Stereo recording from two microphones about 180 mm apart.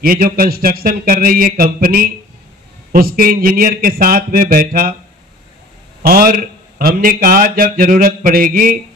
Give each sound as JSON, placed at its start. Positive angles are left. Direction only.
{"t": 0.0, "sound": "speech", "side_deg": -55}
{"t": 6.0, "sound": "speech", "side_deg": -55}